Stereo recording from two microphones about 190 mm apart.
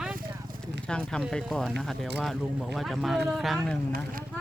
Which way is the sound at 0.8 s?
5° left (ahead or behind).